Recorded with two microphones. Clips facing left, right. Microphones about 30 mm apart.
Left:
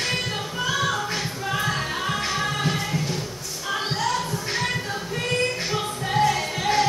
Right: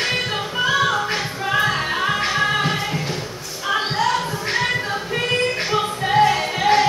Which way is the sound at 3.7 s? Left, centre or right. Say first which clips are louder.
Right 5 dB; right.